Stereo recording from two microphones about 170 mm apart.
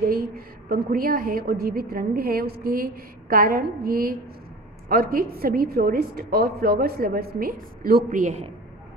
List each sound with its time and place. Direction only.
0.0 s a woman's voice: 60° right (ahead or behind)